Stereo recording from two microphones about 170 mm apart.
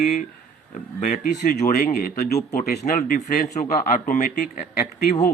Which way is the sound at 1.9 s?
65° left (ahead or behind).